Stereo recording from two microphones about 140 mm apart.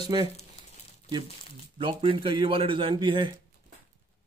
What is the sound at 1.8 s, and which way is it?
Speech, 40° right (ahead or behind).